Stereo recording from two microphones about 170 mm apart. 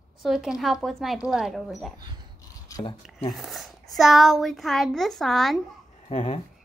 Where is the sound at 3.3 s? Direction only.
Centre (ahead or behind).